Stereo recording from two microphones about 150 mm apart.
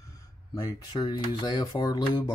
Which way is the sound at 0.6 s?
30° left (ahead or behind).